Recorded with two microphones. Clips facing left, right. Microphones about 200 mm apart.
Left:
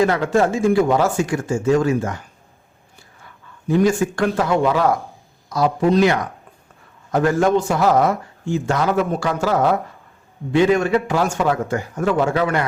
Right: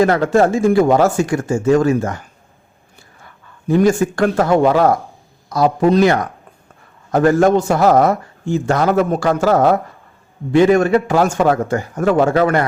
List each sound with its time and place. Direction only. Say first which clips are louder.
0.0 s speech: right 4 dB; 45° right (ahead or behind)
3.7 s speech: right 3 dB; 45° right (ahead or behind)